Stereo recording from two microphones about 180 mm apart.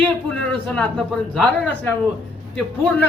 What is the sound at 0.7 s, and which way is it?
Speech, 5° left (ahead or behind).